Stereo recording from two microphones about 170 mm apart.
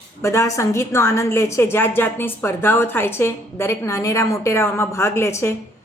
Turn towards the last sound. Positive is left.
turn(degrees=15)  # may be behind; listen again after turning